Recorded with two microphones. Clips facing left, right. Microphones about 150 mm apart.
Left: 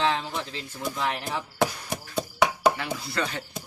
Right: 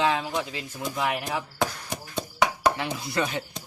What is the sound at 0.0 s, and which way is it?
Speech, 10° right (ahead or behind).